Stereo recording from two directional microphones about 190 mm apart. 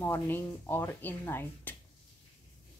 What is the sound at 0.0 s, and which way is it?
Speech, 10° left (ahead or behind).